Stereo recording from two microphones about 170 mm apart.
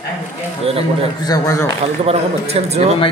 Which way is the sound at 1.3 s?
20° left (ahead or behind).